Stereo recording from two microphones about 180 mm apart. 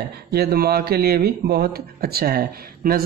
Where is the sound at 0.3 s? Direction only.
60° right (ahead or behind).